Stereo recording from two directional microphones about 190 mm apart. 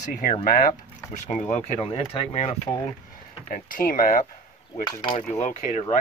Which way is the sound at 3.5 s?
45° left (ahead or behind).